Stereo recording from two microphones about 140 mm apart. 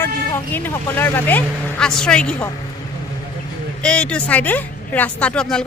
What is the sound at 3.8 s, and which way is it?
Speech, 5° left (ahead or behind).